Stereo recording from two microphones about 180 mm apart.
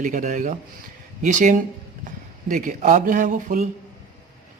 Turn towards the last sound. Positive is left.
turn(degrees=-45)  # may be behind; listen again after turning